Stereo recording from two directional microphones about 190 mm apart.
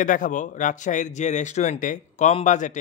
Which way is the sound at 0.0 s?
45° left (ahead or behind).